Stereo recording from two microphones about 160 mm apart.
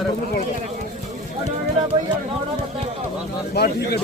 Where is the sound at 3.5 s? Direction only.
90° left.